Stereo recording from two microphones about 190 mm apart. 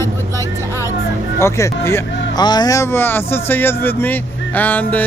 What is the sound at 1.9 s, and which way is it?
Speech, 15° left (ahead or behind).